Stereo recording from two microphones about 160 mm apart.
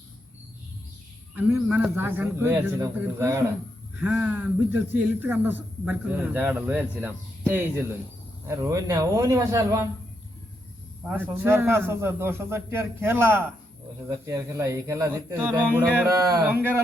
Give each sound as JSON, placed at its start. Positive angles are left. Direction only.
{"t": 1.4, "sound": "a man's voice", "side_deg": -10}
{"t": 4.0, "sound": "a man's voice", "side_deg": -5}
{"t": 11.0, "sound": "a man's voice", "side_deg": -10}